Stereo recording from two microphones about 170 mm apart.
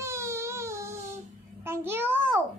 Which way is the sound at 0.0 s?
15° right (ahead or behind).